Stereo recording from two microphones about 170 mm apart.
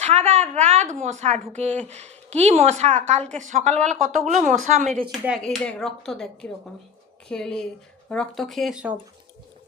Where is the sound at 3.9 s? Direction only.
Centre (ahead or behind).